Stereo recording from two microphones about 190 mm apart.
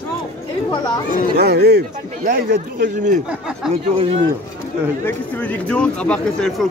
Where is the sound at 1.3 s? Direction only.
60° right (ahead or behind); by 3.2 s 45° right (ahead or behind).